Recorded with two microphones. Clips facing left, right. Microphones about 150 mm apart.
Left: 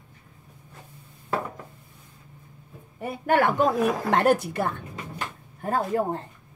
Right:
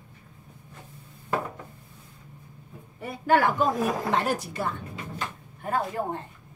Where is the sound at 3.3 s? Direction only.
60° left (ahead or behind).